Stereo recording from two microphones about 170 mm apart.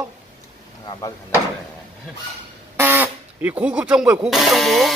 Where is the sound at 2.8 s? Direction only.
10° right (ahead or behind).